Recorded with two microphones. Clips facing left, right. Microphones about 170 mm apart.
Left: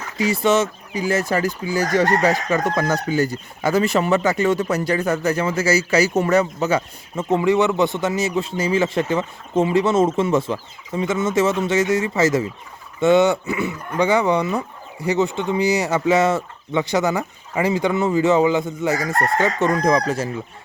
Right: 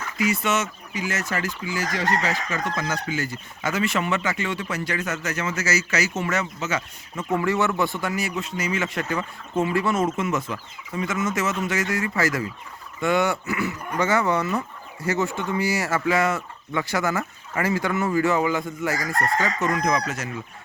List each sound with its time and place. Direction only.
0.2 s chicken: 30° left (ahead or behind)
1.9 s chicken: 50° left (ahead or behind); by 12.5 s 25° left (ahead or behind)
13.0 s speech: 25° left (ahead or behind)